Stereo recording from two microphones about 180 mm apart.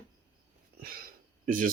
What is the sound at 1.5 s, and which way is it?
Speech, 50° right (ahead or behind).